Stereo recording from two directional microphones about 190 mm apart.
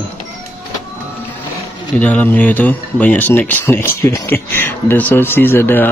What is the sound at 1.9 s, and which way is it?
Speech, 5° left (ahead or behind).